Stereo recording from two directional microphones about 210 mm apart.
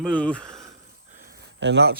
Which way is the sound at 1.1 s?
45° right (ahead or behind).